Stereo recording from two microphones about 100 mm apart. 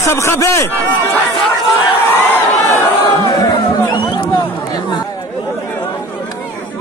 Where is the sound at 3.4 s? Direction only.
50° left (ahead or behind).